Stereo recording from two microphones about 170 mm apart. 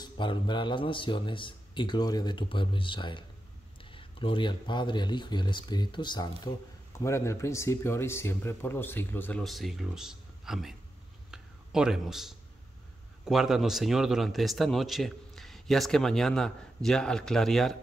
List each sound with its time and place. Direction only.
0.0 s speech: 25° left (ahead or behind); by 9.4 s 10° left (ahead or behind)
9.4 s speech: centre (ahead or behind)
11.2 s a sound: 5° right (ahead or behind)
13.2 s speech: centre (ahead or behind)